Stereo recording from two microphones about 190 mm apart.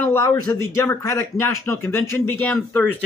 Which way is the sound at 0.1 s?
15° left (ahead or behind).